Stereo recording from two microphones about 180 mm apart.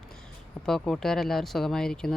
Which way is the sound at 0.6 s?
5° left (ahead or behind).